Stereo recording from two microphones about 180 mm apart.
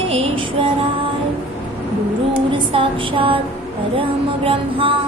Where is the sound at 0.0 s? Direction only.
30° right (ahead or behind).